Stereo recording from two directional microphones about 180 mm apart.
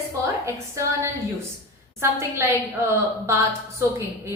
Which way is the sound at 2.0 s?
15° right (ahead or behind).